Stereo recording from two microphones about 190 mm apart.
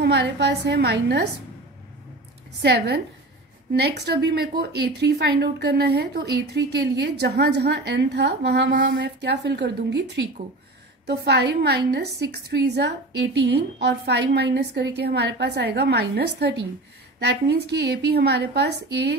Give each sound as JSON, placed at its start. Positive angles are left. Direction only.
{"t": 0.0, "sound": "a woman's voice", "side_deg": -60}
{"t": 2.6, "sound": "a woman's voice", "side_deg": -65}